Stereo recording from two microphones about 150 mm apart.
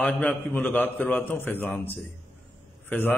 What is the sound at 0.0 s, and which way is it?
A man's voice, 10° left (ahead or behind).